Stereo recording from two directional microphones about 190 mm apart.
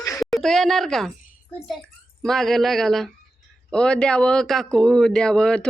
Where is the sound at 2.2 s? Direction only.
Centre (ahead or behind).